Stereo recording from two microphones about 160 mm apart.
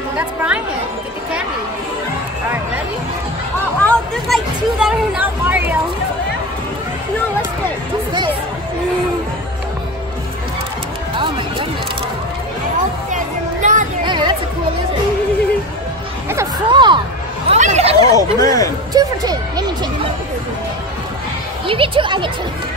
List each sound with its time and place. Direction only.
0.2 s speech: 10° right (ahead or behind)
3.8 s chatter: 5° left (ahead or behind)
4.7 s speech: 5° right (ahead or behind)
13.1 s music: 50° right (ahead or behind)
14.0 s chatter: 30° right (ahead or behind)
16.7 s speech: 30° right (ahead or behind)
17.5 s a sound: 40° right (ahead or behind)
18.0 s speech: 20° left (ahead or behind)
18.9 s speech: 25° right (ahead or behind)
21.6 s speech: 35° right (ahead or behind)